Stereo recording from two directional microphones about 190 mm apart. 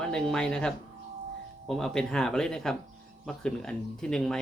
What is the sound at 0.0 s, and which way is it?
Speech, 5° left (ahead or behind).